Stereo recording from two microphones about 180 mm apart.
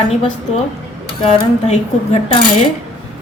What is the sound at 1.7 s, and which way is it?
Speech, 35° left (ahead or behind).